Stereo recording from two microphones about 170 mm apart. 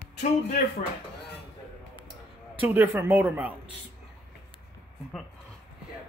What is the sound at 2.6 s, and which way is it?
Speech, 15° right (ahead or behind).